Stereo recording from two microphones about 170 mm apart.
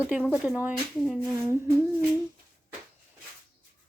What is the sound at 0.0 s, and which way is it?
Speech, 10° right (ahead or behind).